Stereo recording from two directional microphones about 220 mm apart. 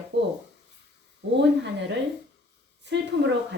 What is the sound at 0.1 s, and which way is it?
A woman's voice, 50° right (ahead or behind).